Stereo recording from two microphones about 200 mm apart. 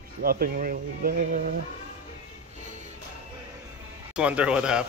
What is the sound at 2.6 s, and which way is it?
Music, 35° right (ahead or behind).